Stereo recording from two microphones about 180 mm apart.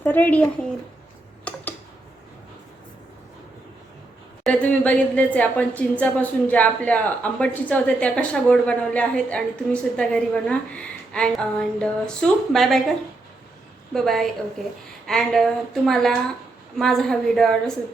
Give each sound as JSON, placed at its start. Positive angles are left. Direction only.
{"t": 0.0, "sound": "speech", "side_deg": 10}
{"t": 1.5, "sound": "tick-tock", "side_deg": 5}
{"t": 4.4, "sound": "speech", "side_deg": 10}
{"t": 13.9, "sound": "speech", "side_deg": 0}